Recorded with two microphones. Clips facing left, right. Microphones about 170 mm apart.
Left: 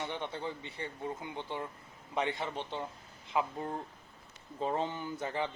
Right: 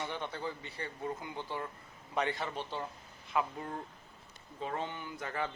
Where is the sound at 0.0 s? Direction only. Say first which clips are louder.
Left 1 dB; 20° left (ahead or behind).